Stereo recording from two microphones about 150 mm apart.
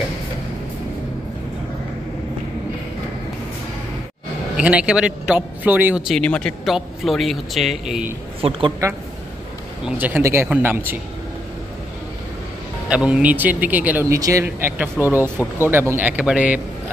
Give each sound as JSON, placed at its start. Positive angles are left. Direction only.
{"t": 4.6, "sound": "speech", "side_deg": -10}
{"t": 6.0, "sound": "speech", "side_deg": 5}
{"t": 8.4, "sound": "a man's voice", "side_deg": -40}
{"t": 9.8, "sound": "speech", "side_deg": -10}
{"t": 12.9, "sound": "speech", "side_deg": -5}